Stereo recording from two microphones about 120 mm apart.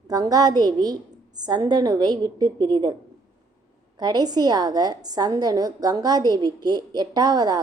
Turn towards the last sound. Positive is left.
turn(degrees=-35)  # may be behind; listen again after turning